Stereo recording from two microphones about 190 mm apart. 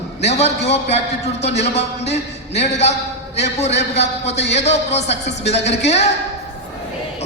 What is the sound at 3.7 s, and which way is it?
Speech, 65° left (ahead or behind).